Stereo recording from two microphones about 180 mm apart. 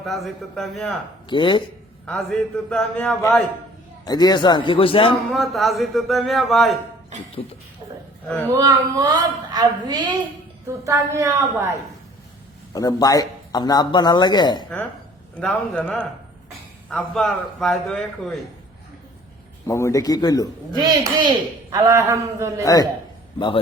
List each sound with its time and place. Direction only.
0.0 s speech: centre (ahead or behind)
1.3 s speech: 25° left (ahead or behind)
2.0 s speech: 5° left (ahead or behind); by 5.1 s 30° left (ahead or behind)
5.3 s speech: centre (ahead or behind)
8.5 s a woman's voice: 20° right (ahead or behind)
12.7 s speech: 20° left (ahead or behind)
15.4 s a man's voice: 5° left (ahead or behind)
19.6 s speech: 15° left (ahead or behind)
20.7 s a woman's voice: 25° right (ahead or behind)
22.6 s speech: 20° left (ahead or behind)